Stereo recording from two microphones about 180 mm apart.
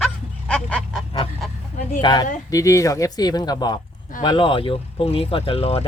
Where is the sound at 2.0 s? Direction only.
25° left (ahead or behind).